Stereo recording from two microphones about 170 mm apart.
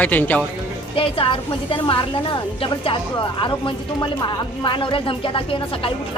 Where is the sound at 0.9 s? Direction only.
30° left (ahead or behind).